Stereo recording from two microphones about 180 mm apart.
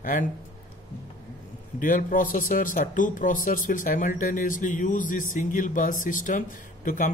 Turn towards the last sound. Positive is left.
turn(degrees=50)  # may be behind; listen again after turning